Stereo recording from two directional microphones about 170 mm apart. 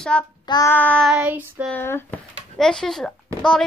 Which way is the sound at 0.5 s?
20° left (ahead or behind).